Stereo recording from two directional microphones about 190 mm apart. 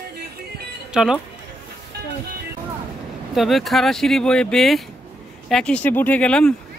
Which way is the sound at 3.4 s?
Centre (ahead or behind).